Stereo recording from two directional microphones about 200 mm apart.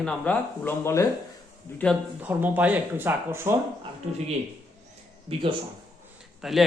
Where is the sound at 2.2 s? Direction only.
10° right (ahead or behind).